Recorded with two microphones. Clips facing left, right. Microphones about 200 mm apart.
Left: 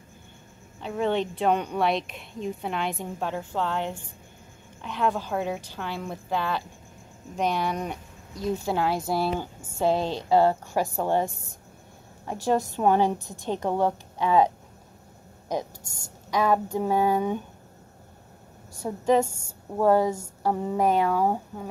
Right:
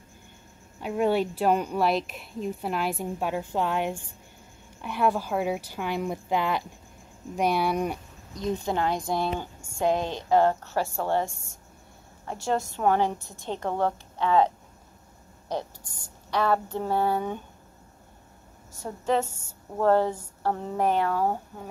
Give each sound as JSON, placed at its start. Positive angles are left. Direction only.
{"t": 0.7, "sound": "speech", "side_deg": -10}
{"t": 8.4, "sound": "a woman's voice", "side_deg": 5}
{"t": 9.8, "sound": "speech", "side_deg": -15}
{"t": 10.3, "sound": "a woman's voice", "side_deg": 10}
{"t": 16.3, "sound": "a woman's voice", "side_deg": 10}
{"t": 18.8, "sound": "a woman's voice", "side_deg": 15}